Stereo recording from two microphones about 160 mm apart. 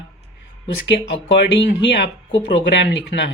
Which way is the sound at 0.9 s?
90° left.